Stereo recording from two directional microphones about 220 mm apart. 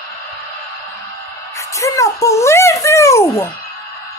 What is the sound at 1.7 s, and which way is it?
A child's voice, 15° left (ahead or behind).